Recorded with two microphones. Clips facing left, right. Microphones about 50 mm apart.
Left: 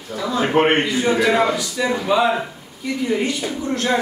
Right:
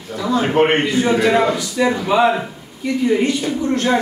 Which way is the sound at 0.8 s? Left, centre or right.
Centre.